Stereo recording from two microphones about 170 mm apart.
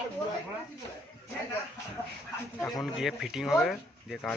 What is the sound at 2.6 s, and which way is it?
Speech, centre (ahead or behind).